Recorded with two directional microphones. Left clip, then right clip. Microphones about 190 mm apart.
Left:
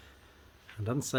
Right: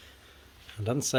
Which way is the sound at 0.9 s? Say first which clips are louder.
Right 5 dB; 5° right (ahead or behind).